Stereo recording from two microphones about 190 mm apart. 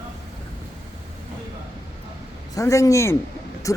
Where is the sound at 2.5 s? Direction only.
15° left (ahead or behind).